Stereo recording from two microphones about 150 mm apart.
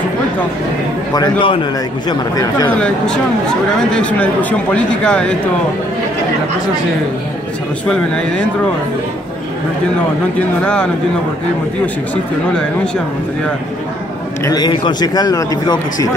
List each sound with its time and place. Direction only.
1.1 s a man's voice: 30° left (ahead or behind)
3.9 s speech: 10° left (ahead or behind)
7.9 s speech: 5° left (ahead or behind)
10.6 s speech: 5° left (ahead or behind)
12.5 s speech: 5° left (ahead or behind)
14.4 s a man's voice: 25° left (ahead or behind)